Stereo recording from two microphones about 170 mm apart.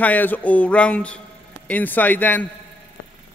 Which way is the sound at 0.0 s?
10° left (ahead or behind).